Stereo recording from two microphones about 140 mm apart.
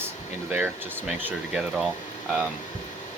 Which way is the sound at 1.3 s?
5° right (ahead or behind).